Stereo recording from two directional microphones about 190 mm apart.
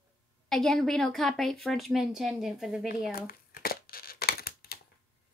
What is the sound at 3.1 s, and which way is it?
Crumpling, 50° left (ahead or behind).